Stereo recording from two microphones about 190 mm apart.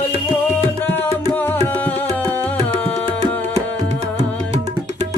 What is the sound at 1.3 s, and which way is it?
Music, 10° left (ahead or behind).